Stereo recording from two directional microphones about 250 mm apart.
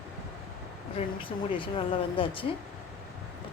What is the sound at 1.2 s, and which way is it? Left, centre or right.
Speech, centre.